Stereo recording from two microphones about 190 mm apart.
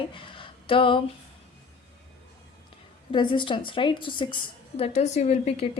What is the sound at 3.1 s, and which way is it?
A woman's voice, 25° left (ahead or behind).